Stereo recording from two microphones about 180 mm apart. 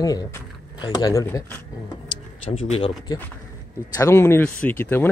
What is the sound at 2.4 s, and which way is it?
Speech, 35° left (ahead or behind).